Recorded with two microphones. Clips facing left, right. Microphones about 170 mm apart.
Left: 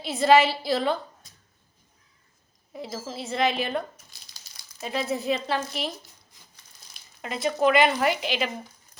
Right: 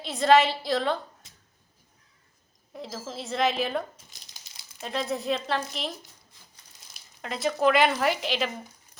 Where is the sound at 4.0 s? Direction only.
25° right (ahead or behind).